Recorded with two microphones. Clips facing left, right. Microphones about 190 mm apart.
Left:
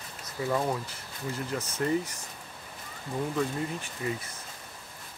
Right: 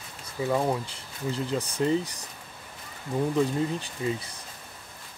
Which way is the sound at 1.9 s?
35° right (ahead or behind).